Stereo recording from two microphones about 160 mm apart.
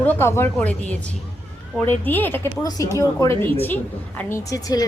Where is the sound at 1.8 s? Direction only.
10° left (ahead or behind).